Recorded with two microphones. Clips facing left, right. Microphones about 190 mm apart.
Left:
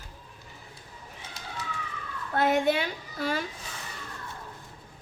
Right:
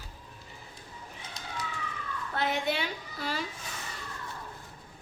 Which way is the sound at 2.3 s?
50° left (ahead or behind).